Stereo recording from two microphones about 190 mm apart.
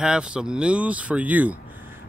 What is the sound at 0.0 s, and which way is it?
Speech, 5° right (ahead or behind).